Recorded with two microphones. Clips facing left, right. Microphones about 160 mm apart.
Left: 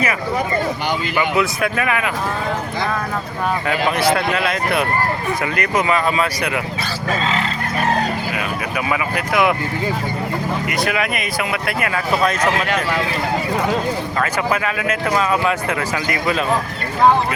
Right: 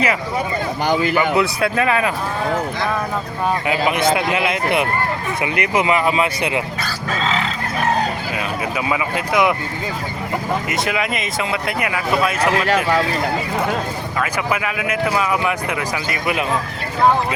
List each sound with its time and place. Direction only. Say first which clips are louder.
1.4 s speech: right 1 dB; 30° right (ahead or behind)
3.7 s speech: left 1 dB; 15° right (ahead or behind)
7.2 s speech: right 2 dB; centre (ahead or behind)
8.9 s speech: even; 20° right (ahead or behind)
10.7 s speech: left 1 dB; 20° right (ahead or behind)
12.4 s speech: right 2 dB; 30° right (ahead or behind)
14.5 s speech: left 1 dB; 15° right (ahead or behind)